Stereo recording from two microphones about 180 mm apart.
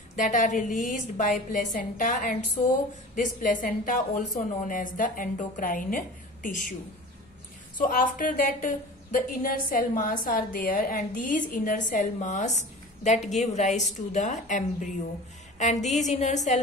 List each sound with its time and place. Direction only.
0.1 s a woman's voice: 45° left (ahead or behind)
7.8 s a woman's voice: 50° left (ahead or behind)